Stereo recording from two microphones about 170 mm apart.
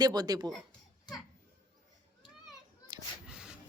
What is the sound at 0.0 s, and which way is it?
Speech, 25° right (ahead or behind).